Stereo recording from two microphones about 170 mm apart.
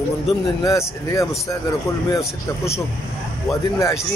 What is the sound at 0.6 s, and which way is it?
A man's voice, 20° left (ahead or behind).